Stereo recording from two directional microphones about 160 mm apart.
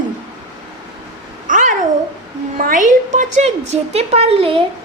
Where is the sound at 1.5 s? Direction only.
55° right (ahead or behind).